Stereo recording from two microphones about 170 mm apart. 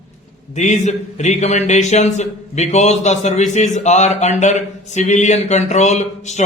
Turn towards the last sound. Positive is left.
turn(degrees=45)  # may be behind; listen again after turning